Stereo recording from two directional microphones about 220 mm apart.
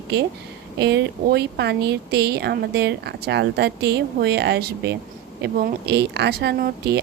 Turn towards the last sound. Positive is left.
turn(degrees=-45)  # may be behind; listen again after turning